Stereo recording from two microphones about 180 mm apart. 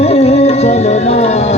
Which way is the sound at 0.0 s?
35° left (ahead or behind).